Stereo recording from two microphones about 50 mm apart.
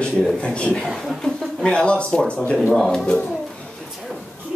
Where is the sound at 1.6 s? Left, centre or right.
Left.